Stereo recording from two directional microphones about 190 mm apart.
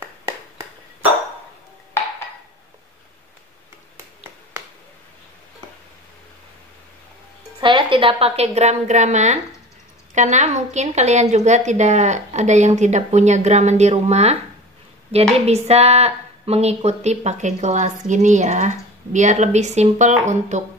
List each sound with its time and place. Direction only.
7.6 s a woman's voice: 25° right (ahead or behind)